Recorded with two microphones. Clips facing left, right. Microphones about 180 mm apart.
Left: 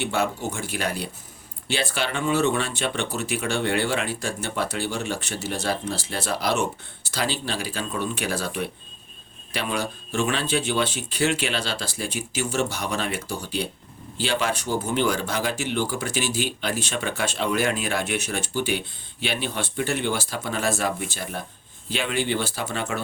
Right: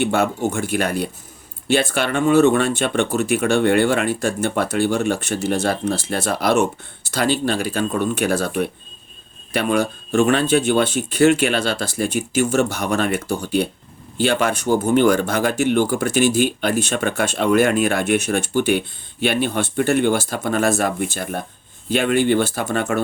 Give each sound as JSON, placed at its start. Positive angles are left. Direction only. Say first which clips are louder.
{"t": 0.0, "sound": "speech", "louder": "right 7 dB", "side_deg": -50}